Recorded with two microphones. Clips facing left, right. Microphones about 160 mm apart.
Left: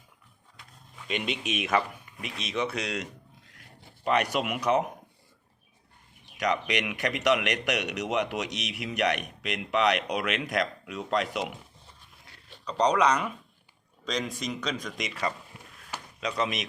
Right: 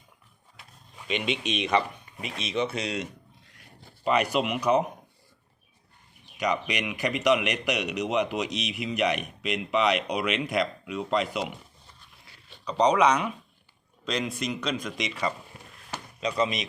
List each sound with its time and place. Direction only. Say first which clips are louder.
1.5 s speech: right 1 dB; 5° left (ahead or behind)
2.1 s chopping: right 2 dB; 30° right (ahead or behind)
2.4 s speech: right 2 dB; centre (ahead or behind)
6.3 s speech: even; centre (ahead or behind)
12.6 s speech: right 2 dB; 5° right (ahead or behind)
15.9 s a sound: right 3 dB; centre (ahead or behind)